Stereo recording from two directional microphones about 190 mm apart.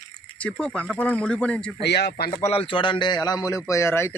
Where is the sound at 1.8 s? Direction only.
60° left (ahead or behind).